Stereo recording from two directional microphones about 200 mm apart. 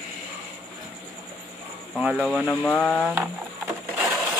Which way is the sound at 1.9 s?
5° right (ahead or behind).